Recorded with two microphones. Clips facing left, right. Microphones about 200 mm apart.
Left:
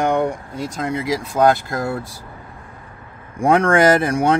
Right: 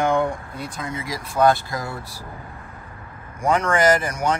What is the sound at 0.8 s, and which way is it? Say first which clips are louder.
Speech: left 9 dB; 80° left.